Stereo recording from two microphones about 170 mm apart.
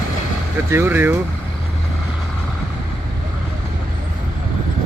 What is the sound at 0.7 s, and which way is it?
Speech, 15° right (ahead or behind).